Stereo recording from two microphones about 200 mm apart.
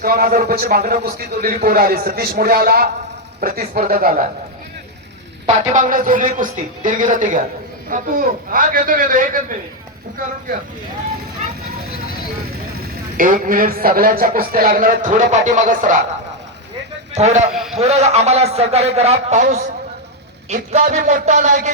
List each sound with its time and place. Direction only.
0.0 s a man's voice: 50° right (ahead or behind)
5.7 s a man's voice: 40° right (ahead or behind)
13.1 s a man's voice: 45° right (ahead or behind)
17.2 s a man's voice: 35° right (ahead or behind)
17.5 s a man's voice: centre (ahead or behind)
17.7 s a man's voice: 35° right (ahead or behind)